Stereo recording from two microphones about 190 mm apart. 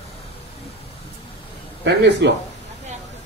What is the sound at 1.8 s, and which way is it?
Speech, 65° right (ahead or behind).